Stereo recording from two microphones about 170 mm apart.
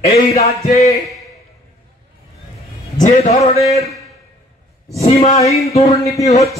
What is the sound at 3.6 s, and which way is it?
Speech, 20° left (ahead or behind).